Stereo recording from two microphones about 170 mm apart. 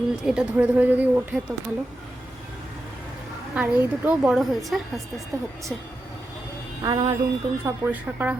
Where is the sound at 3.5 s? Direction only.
10° right (ahead or behind).